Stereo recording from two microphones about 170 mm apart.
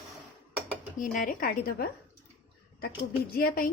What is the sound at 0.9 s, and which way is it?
Speech, 55° left (ahead or behind).